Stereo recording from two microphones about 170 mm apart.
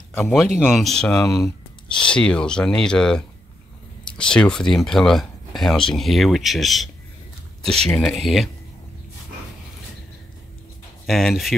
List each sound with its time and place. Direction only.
0.6 s speech: 5° right (ahead or behind)
1.3 s a sound: 20° left (ahead or behind)
2.0 s speech: 5° left (ahead or behind)
11.1 s speech: centre (ahead or behind)